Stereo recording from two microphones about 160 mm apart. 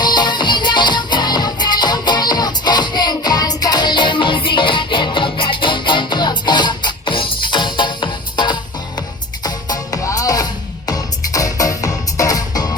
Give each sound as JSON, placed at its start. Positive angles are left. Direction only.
{"t": 0.0, "sound": "music", "side_deg": 25}